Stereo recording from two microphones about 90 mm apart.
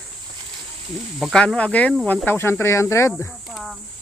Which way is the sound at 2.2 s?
25° left (ahead or behind).